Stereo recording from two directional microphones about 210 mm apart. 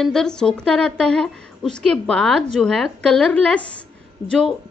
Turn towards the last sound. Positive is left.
turn(degrees=5)  # may be behind; listen again after turning